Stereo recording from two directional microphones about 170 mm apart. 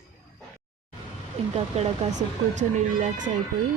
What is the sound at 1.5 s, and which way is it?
Speech, 40° right (ahead or behind).